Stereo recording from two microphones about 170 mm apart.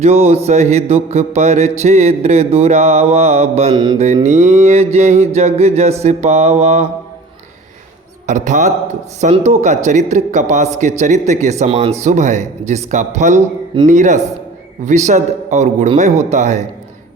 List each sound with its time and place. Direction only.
0.0 s mantra: 40° right (ahead or behind)
8.3 s a man's voice: 45° right (ahead or behind)